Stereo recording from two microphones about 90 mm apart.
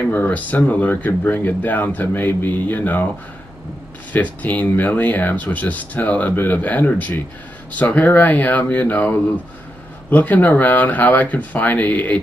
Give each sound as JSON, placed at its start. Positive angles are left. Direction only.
{"t": 0.1, "sound": "speech", "side_deg": 20}
{"t": 4.1, "sound": "speech", "side_deg": 20}